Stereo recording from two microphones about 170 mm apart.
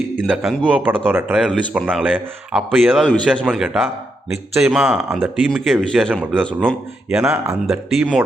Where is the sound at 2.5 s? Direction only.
Centre (ahead or behind).